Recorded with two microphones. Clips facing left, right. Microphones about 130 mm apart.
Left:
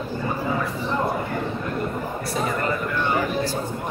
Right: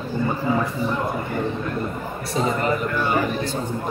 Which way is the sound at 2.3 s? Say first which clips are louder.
Right 4 dB; 20° right (ahead or behind).